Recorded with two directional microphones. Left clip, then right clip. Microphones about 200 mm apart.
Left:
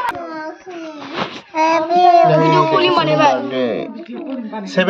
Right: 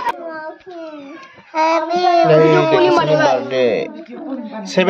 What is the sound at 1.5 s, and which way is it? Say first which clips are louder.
Child singing: left 1 dB; 55° right (ahead or behind).